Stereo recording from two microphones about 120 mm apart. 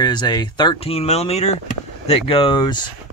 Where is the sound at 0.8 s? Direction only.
55° left (ahead or behind); by 2.9 s 40° left (ahead or behind).